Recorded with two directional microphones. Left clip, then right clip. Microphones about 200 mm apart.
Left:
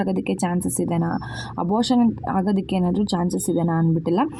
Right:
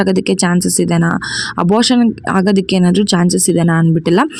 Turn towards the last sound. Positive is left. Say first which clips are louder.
# right 8 dB
turn(degrees=-50)  # may be behind; listen again after turning